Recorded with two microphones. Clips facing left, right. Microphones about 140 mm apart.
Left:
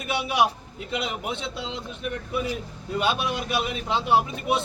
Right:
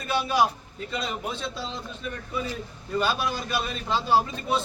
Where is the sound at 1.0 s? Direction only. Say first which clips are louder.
Left 1 dB; 20° left (ahead or behind).